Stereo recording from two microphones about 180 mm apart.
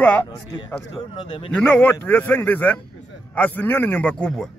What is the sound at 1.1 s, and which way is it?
Speech, 25° left (ahead or behind).